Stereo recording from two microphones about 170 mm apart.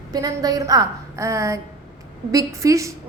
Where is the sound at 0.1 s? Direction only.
20° right (ahead or behind).